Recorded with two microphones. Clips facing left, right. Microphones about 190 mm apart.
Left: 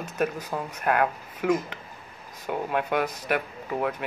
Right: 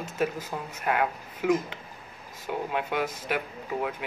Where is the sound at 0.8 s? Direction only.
55° left (ahead or behind).